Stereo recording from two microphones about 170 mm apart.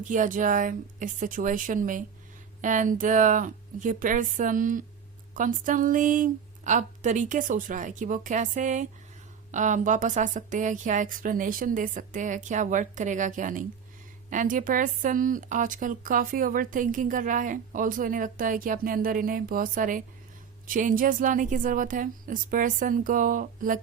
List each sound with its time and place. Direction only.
0.0 s speech: 50° right (ahead or behind)